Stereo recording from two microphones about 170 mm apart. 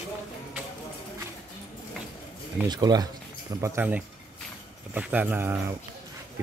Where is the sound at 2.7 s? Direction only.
25° right (ahead or behind).